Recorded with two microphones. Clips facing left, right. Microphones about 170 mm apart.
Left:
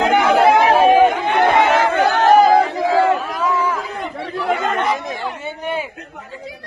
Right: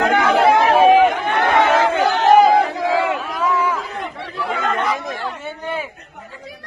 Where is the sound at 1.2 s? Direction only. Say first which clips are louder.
Left 2 dB; 20° left (ahead or behind).